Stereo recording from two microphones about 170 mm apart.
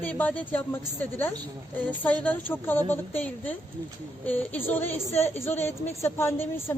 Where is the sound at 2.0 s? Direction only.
10° left (ahead or behind).